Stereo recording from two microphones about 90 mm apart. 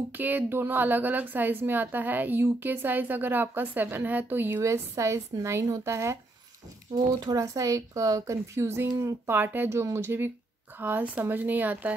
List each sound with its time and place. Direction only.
0.1 s a woman's voice: 20° right (ahead or behind)
7.2 s a woman's voice: 40° right (ahead or behind); by 11.9 s 20° right (ahead or behind)